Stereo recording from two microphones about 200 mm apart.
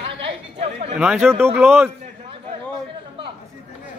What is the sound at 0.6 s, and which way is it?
Chatter, 35° right (ahead or behind).